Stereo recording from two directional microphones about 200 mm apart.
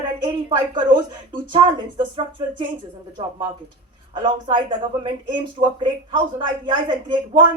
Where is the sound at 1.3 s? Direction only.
25° right (ahead or behind).